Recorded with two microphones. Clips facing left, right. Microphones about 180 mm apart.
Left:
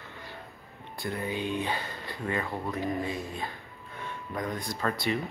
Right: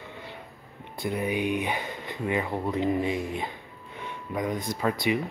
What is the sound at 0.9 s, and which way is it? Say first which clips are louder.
Speech: right 5 dB; 20° right (ahead or behind).